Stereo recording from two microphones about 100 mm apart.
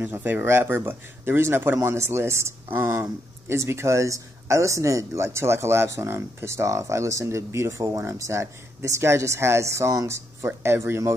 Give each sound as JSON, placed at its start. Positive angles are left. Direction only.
{"t": 0.0, "sound": "speech", "side_deg": -20}